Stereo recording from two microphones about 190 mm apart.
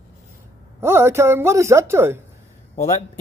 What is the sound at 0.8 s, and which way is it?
A woman's voice, 15° right (ahead or behind).